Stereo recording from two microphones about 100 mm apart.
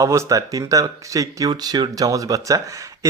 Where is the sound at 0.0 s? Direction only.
35° right (ahead or behind).